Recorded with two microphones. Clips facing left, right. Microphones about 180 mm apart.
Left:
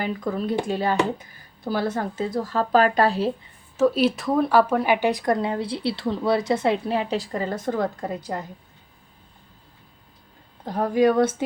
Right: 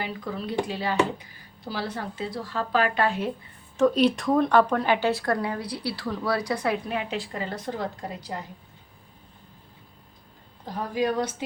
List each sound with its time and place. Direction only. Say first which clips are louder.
0.0 s speech: left 6 dB; 45° left (ahead or behind)
3.8 s speech: left 1 dB; 5° left (ahead or behind); by 8.4 s 45° left (ahead or behind)
10.7 s speech: left 7 dB; 55° left (ahead or behind)